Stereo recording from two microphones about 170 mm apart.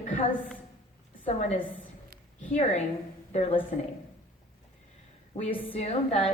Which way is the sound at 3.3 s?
40° left (ahead or behind).